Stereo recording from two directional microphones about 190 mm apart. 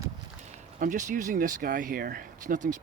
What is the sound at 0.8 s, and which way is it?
Speech, 40° right (ahead or behind).